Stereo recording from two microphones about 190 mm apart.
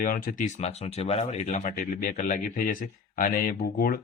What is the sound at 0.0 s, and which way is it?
Speech, 45° left (ahead or behind).